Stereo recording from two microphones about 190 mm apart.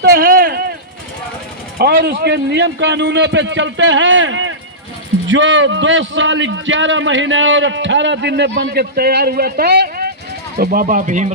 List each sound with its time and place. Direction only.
0.0 s a sound: 50° right (ahead or behind)
1.8 s a man's voice: 55° right (ahead or behind); by 4.5 s 90° right
5.3 s a man's voice: 80° right; by 11.3 s 40° right (ahead or behind)